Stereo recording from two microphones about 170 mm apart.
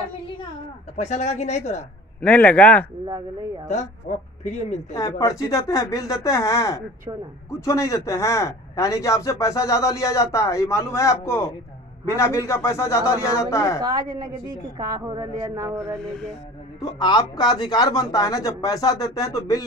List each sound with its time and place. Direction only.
0.9 s a woman's voice: 40° left (ahead or behind)
2.2 s speech: 10° left (ahead or behind)
3.6 s speech: 45° left (ahead or behind)
4.9 s speech: 20° left (ahead or behind)
14.1 s speech: 25° right (ahead or behind)
16.8 s speech: 25° left (ahead or behind)